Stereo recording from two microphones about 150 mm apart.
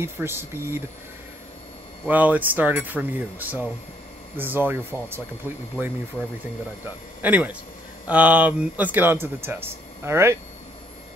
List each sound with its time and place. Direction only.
0.0 s speech: 15° right (ahead or behind)
2.0 s speech: 10° right (ahead or behind)
7.2 s speech: 10° right (ahead or behind)